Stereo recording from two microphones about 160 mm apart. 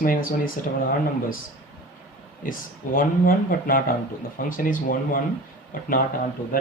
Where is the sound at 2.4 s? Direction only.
60° left (ahead or behind).